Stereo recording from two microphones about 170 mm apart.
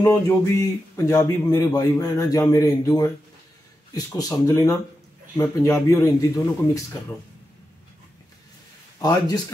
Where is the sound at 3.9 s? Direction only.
20° left (ahead or behind).